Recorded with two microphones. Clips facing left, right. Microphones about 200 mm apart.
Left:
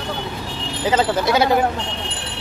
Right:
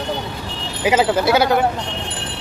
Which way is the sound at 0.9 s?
5° right (ahead or behind).